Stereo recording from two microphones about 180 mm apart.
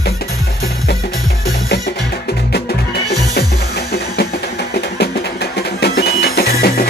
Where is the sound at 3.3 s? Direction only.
65° left (ahead or behind).